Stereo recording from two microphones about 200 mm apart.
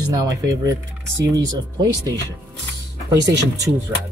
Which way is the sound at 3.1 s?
15° right (ahead or behind).